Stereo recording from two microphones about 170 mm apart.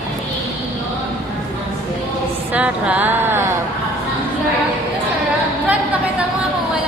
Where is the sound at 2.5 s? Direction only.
10° right (ahead or behind).